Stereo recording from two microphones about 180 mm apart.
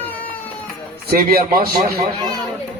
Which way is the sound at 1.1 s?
55° right (ahead or behind).